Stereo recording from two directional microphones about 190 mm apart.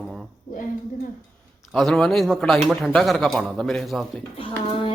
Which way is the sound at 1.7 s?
Centre (ahead or behind).